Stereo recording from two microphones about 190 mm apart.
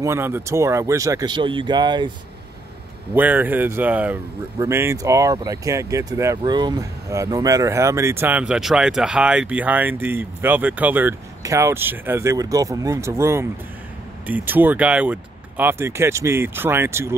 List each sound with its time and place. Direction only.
0.0 s speech: 15° right (ahead or behind)
3.2 s speech: 10° right (ahead or behind)